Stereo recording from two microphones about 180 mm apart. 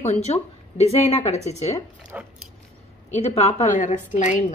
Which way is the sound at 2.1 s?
5° right (ahead or behind).